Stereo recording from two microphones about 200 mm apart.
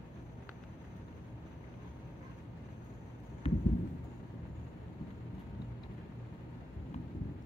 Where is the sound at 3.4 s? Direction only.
30° left (ahead or behind).